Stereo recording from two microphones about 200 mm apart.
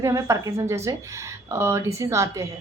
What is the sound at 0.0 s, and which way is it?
A woman's voice, 15° right (ahead or behind).